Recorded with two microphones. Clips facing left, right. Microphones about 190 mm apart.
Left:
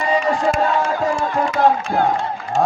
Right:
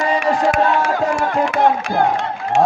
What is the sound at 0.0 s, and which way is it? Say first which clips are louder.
Crowd: right 1 dB; 75° right (ahead or behind).